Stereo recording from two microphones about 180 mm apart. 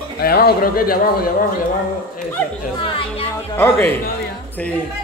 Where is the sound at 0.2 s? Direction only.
60° left (ahead or behind).